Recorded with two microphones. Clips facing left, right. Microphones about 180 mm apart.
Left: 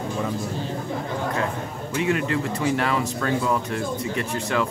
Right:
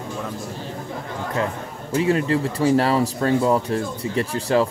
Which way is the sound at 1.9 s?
35° right (ahead or behind).